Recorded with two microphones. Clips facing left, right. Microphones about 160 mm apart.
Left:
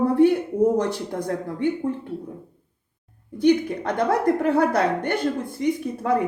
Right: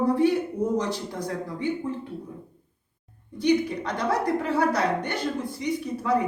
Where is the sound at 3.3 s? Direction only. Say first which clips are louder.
Left 4 dB; 55° left (ahead or behind).